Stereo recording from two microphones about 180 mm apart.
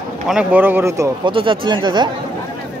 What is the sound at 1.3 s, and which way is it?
Speech, 30° right (ahead or behind).